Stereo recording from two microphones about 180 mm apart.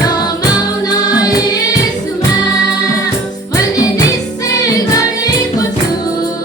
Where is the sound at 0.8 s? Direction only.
20° left (ahead or behind).